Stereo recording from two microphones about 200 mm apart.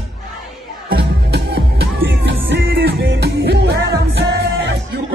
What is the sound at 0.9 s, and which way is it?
Music, 50° right (ahead or behind).